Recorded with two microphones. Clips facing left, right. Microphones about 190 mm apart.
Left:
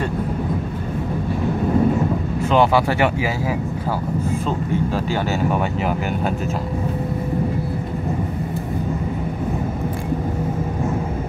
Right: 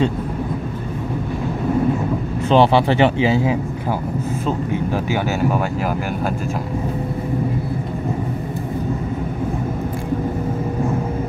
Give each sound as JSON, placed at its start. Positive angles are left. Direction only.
{"t": 2.5, "sound": "speech", "side_deg": -30}
{"t": 4.9, "sound": "speech", "side_deg": -10}